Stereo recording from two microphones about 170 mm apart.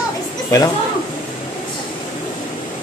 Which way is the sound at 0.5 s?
20° left (ahead or behind).